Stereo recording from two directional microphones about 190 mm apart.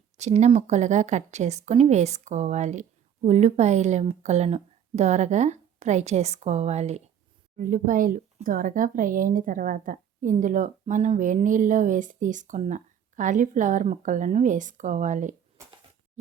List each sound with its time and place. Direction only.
0.2 s speech: 35° right (ahead or behind)